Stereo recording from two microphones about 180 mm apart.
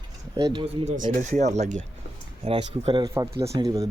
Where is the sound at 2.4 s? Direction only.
30° right (ahead or behind).